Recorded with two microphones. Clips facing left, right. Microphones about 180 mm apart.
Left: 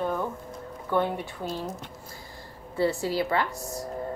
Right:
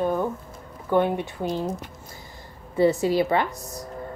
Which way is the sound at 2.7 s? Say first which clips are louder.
Right 6 dB; 20° right (ahead or behind).